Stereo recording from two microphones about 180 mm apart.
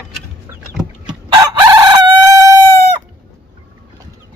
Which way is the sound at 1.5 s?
20° right (ahead or behind).